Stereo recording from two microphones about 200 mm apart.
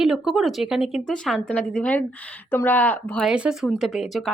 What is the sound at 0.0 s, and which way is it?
Speech, centre (ahead or behind).